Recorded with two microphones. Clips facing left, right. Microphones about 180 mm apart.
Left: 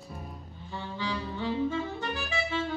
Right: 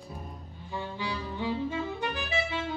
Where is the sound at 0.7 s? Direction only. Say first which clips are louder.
Even; 15° right (ahead or behind).